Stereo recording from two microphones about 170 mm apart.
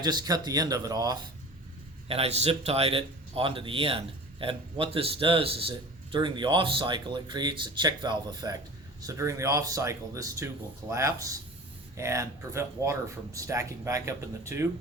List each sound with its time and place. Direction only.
0.0 s speech: 25° right (ahead or behind)
2.0 s speech: 35° right (ahead or behind); by 14.7 s 15° right (ahead or behind)